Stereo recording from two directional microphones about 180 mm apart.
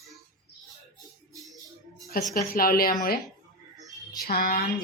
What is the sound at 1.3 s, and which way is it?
Music, centre (ahead or behind).